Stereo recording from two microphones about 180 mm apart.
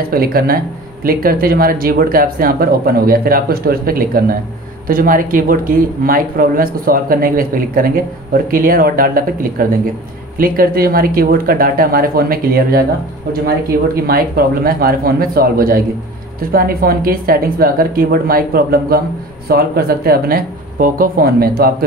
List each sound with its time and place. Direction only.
0.1 s speech: 55° right (ahead or behind)
14.0 s speech: 55° right (ahead or behind)